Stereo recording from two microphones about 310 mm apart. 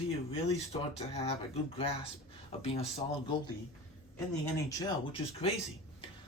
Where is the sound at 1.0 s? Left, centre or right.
Centre.